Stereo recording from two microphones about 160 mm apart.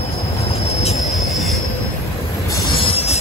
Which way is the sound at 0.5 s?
40° left (ahead or behind).